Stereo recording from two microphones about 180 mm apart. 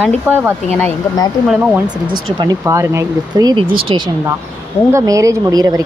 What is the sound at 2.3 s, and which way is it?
Speech, 20° right (ahead or behind).